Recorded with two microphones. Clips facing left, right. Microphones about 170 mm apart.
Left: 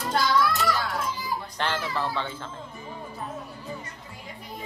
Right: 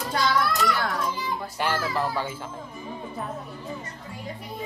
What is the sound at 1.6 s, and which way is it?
Speech, 10° right (ahead or behind).